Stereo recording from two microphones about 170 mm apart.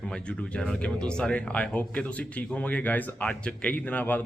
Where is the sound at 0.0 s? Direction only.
5° left (ahead or behind).